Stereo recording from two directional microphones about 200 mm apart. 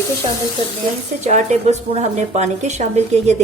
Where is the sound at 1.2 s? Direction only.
35° right (ahead or behind).